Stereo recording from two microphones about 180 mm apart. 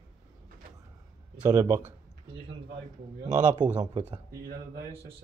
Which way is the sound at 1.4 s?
15° right (ahead or behind).